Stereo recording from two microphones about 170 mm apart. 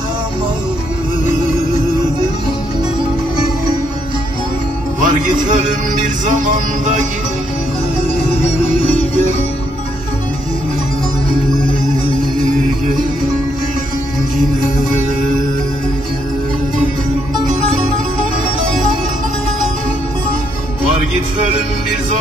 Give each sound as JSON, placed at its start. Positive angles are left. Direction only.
{"t": 5.0, "sound": "music", "side_deg": -50}